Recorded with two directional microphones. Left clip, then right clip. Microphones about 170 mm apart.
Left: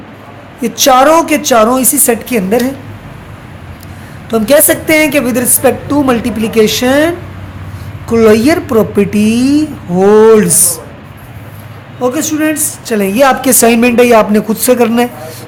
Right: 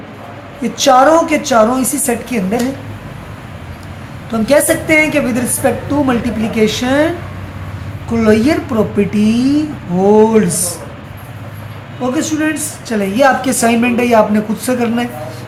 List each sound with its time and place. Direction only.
0.6 s a woman's voice: 60° left (ahead or behind)
4.3 s a woman's voice: 60° left (ahead or behind)
11.9 s a woman's voice: 60° left (ahead or behind)